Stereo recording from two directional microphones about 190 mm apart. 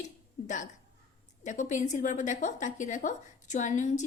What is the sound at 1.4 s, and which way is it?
A woman's voice, 40° left (ahead or behind).